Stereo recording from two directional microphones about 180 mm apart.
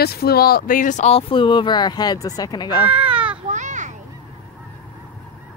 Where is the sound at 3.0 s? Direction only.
5° right (ahead or behind).